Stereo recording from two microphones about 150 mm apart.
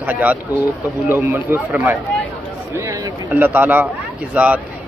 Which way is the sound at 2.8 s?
25° right (ahead or behind).